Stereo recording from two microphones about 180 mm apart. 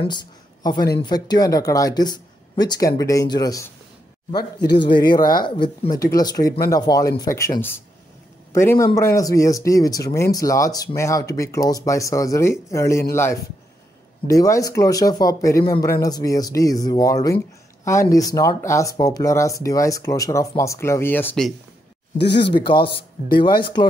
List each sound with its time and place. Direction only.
0.0 s speech: 25° left (ahead or behind)
8.5 s speech: 15° left (ahead or behind)
22.2 s speech: 70° left (ahead or behind)
22.6 s speech: 25° left (ahead or behind)